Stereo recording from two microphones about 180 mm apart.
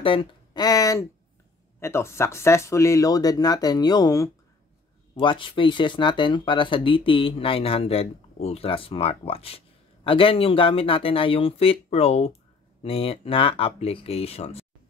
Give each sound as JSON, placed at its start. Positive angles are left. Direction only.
{"t": 0.0, "sound": "speech", "side_deg": 30}